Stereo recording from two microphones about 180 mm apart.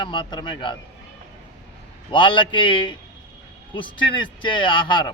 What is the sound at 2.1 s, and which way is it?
A man's voice, 25° left (ahead or behind).